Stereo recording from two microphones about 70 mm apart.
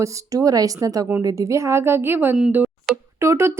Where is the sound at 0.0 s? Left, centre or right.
Right.